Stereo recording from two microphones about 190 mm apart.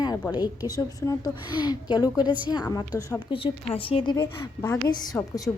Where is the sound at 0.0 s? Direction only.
20° left (ahead or behind).